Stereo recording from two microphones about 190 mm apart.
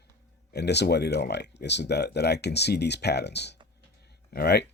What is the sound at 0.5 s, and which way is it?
Speech, 60° left (ahead or behind).